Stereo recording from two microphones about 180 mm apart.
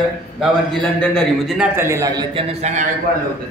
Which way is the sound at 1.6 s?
15° right (ahead or behind).